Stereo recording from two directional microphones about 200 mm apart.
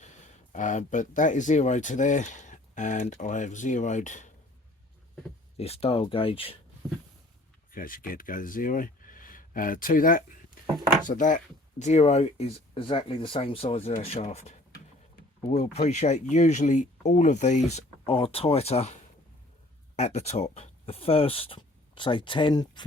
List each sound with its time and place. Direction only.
0.5 s speech: 40° left (ahead or behind)
5.5 s speech: 30° left (ahead or behind)
7.7 s speech: 45° left (ahead or behind)
20.0 s speech: 35° left (ahead or behind)